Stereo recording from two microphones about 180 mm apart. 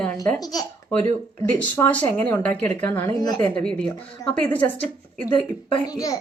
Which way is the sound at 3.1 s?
25° left (ahead or behind).